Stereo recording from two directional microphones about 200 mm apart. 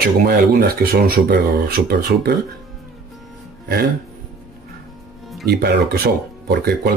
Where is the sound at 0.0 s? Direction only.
50° right (ahead or behind).